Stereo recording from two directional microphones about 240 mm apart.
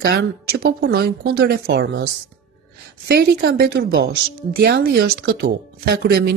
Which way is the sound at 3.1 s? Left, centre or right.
Right.